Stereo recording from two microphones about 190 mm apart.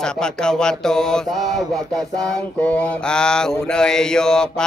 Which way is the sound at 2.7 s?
5° left (ahead or behind).